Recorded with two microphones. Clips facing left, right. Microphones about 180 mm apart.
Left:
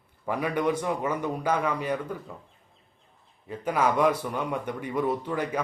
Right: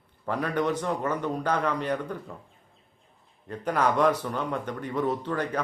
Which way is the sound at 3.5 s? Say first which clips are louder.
Even; 10° left (ahead or behind).